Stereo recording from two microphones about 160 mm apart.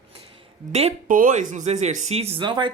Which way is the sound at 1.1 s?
55° right (ahead or behind).